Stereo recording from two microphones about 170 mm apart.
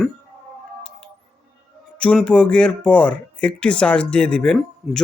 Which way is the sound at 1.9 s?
5° left (ahead or behind).